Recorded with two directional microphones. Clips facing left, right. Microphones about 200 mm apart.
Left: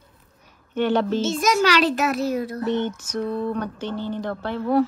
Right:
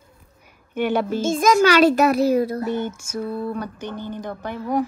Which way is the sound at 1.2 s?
50° right (ahead or behind).